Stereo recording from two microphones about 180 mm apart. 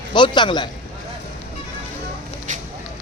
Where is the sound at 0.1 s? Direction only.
25° left (ahead or behind).